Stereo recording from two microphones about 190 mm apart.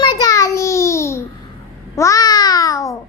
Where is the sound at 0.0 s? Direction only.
20° left (ahead or behind).